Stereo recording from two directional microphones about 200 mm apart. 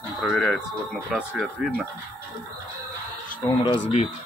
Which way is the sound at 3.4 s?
25° left (ahead or behind).